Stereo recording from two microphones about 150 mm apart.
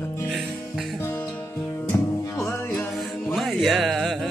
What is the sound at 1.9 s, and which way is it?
Music, 20° left (ahead or behind).